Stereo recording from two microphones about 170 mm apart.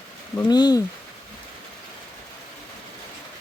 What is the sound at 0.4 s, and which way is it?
Speech, 25° left (ahead or behind).